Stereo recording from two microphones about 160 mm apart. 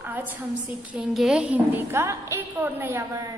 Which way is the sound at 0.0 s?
10° right (ahead or behind).